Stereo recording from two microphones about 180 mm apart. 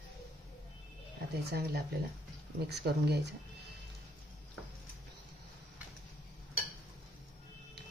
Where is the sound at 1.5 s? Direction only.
60° right (ahead or behind).